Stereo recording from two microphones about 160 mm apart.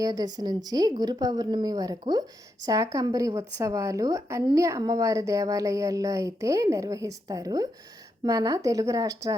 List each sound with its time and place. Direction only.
0.0 s a woman's voice: 25° right (ahead or behind)